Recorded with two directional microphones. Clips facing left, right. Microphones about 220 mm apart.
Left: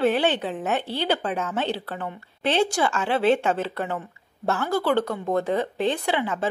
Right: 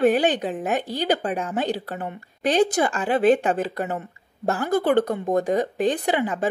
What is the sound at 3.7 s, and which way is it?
Speech, 40° right (ahead or behind).